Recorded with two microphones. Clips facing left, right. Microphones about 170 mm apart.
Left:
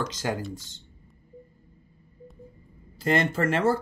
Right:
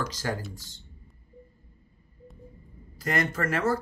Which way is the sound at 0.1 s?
20° left (ahead or behind).